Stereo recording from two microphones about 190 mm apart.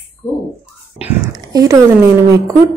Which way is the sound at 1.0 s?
15° right (ahead or behind).